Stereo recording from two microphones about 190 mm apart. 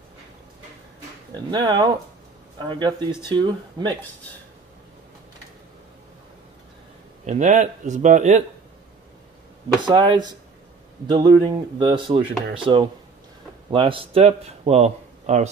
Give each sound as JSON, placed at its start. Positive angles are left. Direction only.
{"t": 1.5, "sound": "speech", "side_deg": -25}
{"t": 7.2, "sound": "a man's voice", "side_deg": -40}
{"t": 9.8, "sound": "a man's voice", "side_deg": -25}